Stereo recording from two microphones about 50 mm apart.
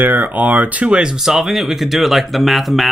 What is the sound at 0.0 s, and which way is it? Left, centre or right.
Speech, right.